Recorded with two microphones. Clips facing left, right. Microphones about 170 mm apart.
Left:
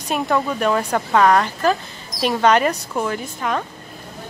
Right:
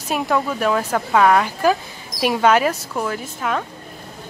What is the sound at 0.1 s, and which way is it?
Speech, centre (ahead or behind).